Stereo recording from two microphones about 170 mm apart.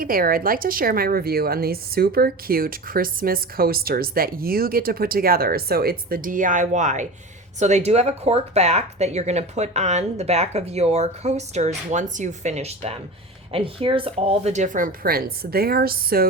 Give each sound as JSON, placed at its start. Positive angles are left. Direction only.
{"t": 0.0, "sound": "a woman's voice", "side_deg": -60}